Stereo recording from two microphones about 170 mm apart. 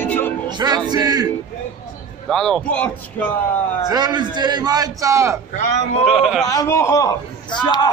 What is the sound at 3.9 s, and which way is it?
A man's voice, 25° right (ahead or behind).